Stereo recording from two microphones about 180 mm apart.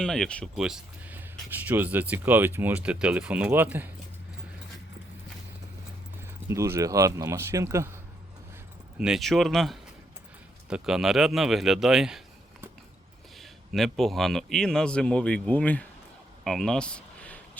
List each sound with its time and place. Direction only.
0.0 s speech: 5° left (ahead or behind)
6.5 s speech: 15° right (ahead or behind)
9.0 s speech: 5° right (ahead or behind)
13.4 s speech: centre (ahead or behind)
16.4 s a sound: 5° left (ahead or behind)